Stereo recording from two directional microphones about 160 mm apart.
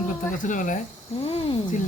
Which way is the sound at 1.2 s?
35° left (ahead or behind).